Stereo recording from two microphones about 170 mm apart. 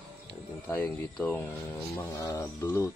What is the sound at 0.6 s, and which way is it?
Speech, 10° left (ahead or behind).